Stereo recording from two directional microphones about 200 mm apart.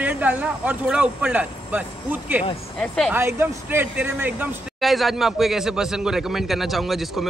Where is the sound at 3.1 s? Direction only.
10° right (ahead or behind).